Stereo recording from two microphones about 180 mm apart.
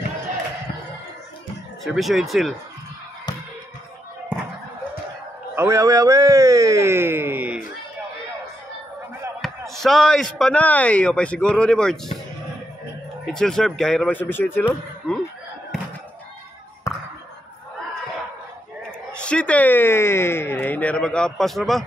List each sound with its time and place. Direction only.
1.9 s a man's voice: centre (ahead or behind)
5.6 s speech: 15° right (ahead or behind)
9.4 s a sound: centre (ahead or behind)
9.8 s a man's voice: centre (ahead or behind)
13.2 s a man's voice: centre (ahead or behind)
16.9 s a sound: 15° left (ahead or behind)
19.1 s speech: 5° left (ahead or behind)